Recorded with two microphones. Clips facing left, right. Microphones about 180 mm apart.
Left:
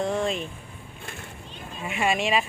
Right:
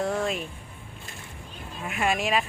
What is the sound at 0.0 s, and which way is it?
Music, 5° right (ahead or behind).